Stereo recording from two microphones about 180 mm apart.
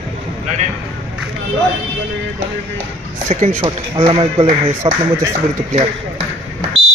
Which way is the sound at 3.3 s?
40° right (ahead or behind).